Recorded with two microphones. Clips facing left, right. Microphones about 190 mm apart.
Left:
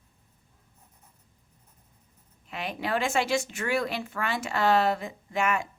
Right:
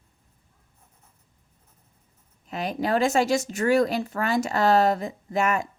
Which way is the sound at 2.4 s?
40° right (ahead or behind).